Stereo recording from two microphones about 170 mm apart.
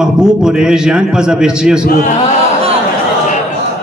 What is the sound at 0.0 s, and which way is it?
A man's voice, 5° right (ahead or behind).